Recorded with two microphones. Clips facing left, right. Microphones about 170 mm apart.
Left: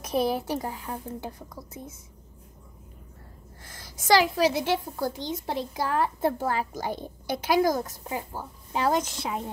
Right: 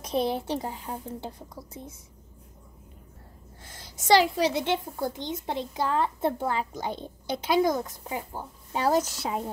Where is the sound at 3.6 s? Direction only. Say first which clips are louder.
Even; 25° right (ahead or behind).